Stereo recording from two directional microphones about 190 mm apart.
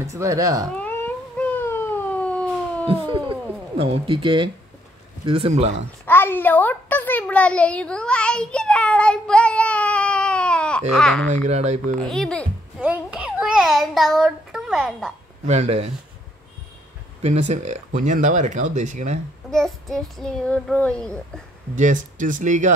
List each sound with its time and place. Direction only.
0.0 s speech: 15° right (ahead or behind)
0.7 s a sound: 10° left (ahead or behind)
2.9 s speech: 30° right (ahead or behind)
5.9 s a child's voice: 10° left (ahead or behind)
11.2 s speech: 35° right (ahead or behind)
12.0 s a sound: 5° left (ahead or behind)
12.8 s child singing: 5° right (ahead or behind)
15.4 s speech: 35° right (ahead or behind)
17.2 s speech: 35° right (ahead or behind)
19.5 s child singing: centre (ahead or behind)
21.7 s speech: 40° right (ahead or behind)